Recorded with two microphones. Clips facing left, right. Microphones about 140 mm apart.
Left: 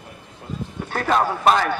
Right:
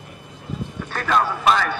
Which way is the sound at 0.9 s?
45° left (ahead or behind).